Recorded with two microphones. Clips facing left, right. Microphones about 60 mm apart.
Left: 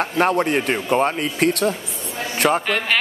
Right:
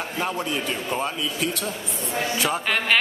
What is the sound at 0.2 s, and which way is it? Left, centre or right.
Speech, left.